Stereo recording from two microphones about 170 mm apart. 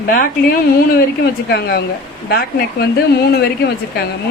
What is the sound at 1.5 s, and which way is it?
Speech, 70° left (ahead or behind).